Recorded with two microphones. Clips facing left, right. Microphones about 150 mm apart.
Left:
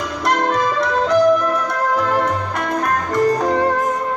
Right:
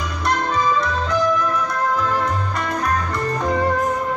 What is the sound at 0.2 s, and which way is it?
Music, 90° left.